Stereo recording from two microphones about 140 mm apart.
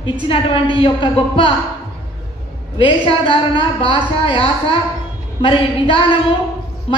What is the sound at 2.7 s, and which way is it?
A woman's voice, 40° left (ahead or behind).